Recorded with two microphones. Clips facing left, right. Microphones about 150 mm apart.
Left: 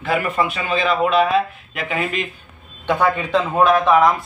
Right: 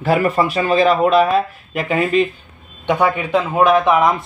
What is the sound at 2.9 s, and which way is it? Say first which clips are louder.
Speech: right 2 dB; 15° right (ahead or behind).